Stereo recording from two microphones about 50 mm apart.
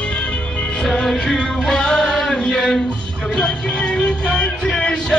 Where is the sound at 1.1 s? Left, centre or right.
Centre.